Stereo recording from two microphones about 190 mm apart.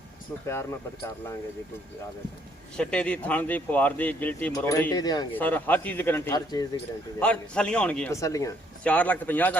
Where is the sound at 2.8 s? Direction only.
5° left (ahead or behind).